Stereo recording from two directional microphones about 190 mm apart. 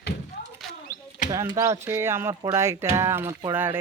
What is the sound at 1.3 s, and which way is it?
Speech, 15° right (ahead or behind).